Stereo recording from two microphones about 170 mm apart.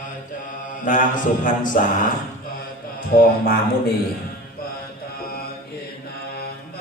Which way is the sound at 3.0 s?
55° left (ahead or behind).